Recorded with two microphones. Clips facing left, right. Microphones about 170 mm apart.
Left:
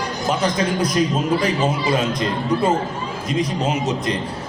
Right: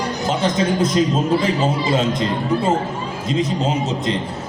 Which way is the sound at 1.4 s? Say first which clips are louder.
Right 1 dB; 25° right (ahead or behind).